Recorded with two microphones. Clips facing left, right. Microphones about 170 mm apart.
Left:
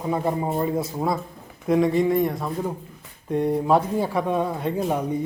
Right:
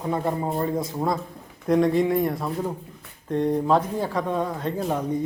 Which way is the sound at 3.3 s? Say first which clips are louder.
Left 1 dB; 10° left (ahead or behind).